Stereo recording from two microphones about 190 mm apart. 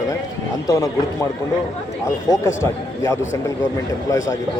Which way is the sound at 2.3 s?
15° left (ahead or behind).